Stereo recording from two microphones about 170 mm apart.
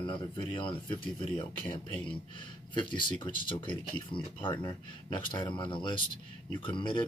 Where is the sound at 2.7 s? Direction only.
30° left (ahead or behind).